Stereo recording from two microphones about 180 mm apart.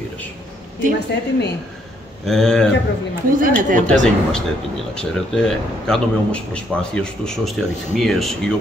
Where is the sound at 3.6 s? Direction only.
50° right (ahead or behind).